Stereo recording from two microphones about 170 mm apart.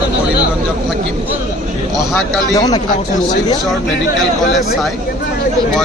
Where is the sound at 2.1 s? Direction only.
Centre (ahead or behind).